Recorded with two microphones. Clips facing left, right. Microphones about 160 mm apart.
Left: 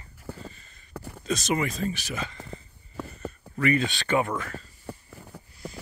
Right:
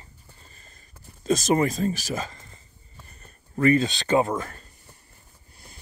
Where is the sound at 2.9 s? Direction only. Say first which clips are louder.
Left 16 dB; 90° left.